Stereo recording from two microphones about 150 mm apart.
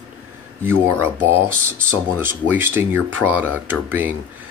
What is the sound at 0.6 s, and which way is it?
Speech, 15° right (ahead or behind).